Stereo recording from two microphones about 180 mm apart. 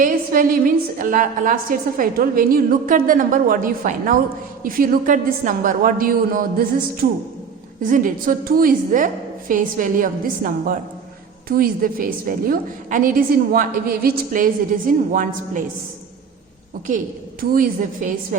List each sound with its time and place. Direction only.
0.0 s a woman's voice: 50° right (ahead or behind)
17.4 s a woman's voice: 50° right (ahead or behind)